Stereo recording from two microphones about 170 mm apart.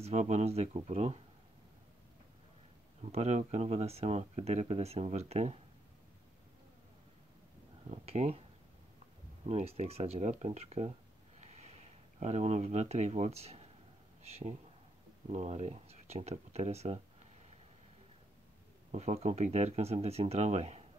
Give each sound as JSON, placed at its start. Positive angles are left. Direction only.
{"t": 0.0, "sound": "speech", "side_deg": -40}
{"t": 3.0, "sound": "speech", "side_deg": -40}
{"t": 7.9, "sound": "speech", "side_deg": -40}
{"t": 9.5, "sound": "speech", "side_deg": -40}
{"t": 11.4, "sound": "a sound", "side_deg": -40}
{"t": 14.2, "sound": "speech", "side_deg": -40}
{"t": 18.9, "sound": "speech", "side_deg": -40}